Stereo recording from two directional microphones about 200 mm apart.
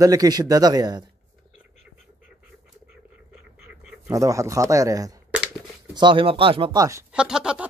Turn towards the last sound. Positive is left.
turn(degrees=-5)  # may be behind; listen again after turning